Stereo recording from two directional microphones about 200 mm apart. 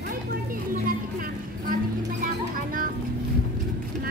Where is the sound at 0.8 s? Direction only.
45° right (ahead or behind).